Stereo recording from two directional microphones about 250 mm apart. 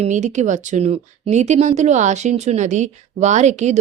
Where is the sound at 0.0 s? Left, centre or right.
Right.